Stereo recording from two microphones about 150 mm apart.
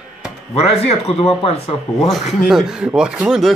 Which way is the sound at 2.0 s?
Centre (ahead or behind).